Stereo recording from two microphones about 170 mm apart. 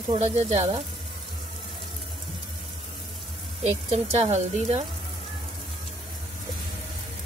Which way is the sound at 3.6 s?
35° right (ahead or behind).